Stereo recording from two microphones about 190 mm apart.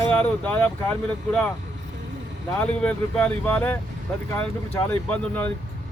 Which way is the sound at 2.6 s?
5° left (ahead or behind).